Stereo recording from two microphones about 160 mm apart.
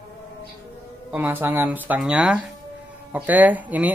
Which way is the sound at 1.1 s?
10° right (ahead or behind).